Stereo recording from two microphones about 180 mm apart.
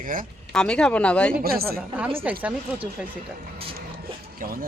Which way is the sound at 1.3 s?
55° right (ahead or behind).